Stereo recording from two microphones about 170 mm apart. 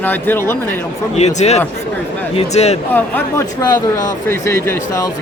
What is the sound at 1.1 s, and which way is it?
Speech, 40° left (ahead or behind).